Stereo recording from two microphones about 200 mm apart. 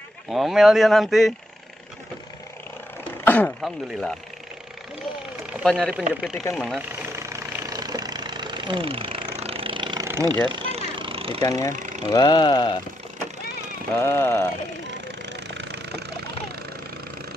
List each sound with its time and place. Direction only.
0.3 s speech: centre (ahead or behind)
3.0 s speech: 10° left (ahead or behind)
5.5 s speech: centre (ahead or behind)
6.5 s vehicle: 5° right (ahead or behind); by 10.0 s 25° right (ahead or behind)
10.0 s a sound: 15° right (ahead or behind)
10.4 s vehicle: 25° right (ahead or behind)
11.4 s speech: 20° left (ahead or behind)
11.7 s a sound: 40° right (ahead or behind)
12.1 s speech: 25° left (ahead or behind)
13.9 s speech: 10° left (ahead or behind)
15.0 s vehicle: 65° right (ahead or behind)